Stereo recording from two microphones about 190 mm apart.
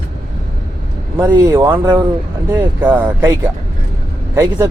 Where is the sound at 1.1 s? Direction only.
10° right (ahead or behind).